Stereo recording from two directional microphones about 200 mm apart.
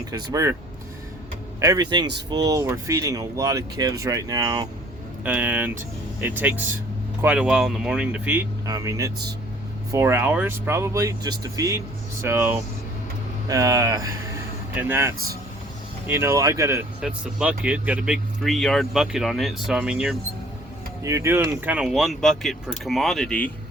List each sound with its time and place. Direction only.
0.1 s speech: 20° right (ahead or behind)
1.6 s speech: 20° right (ahead or behind)
5.2 s speech: 10° right (ahead or behind)
21.0 s speech: 15° right (ahead or behind); by 23.5 s 5° left (ahead or behind)